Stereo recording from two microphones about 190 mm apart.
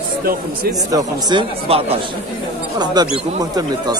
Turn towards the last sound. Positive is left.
turn(degrees=-20)  # may be behind; listen again after turning